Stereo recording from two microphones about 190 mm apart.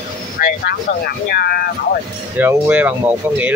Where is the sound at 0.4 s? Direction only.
55° left (ahead or behind).